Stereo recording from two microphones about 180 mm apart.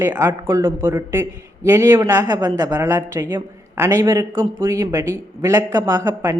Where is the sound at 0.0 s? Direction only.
15° right (ahead or behind).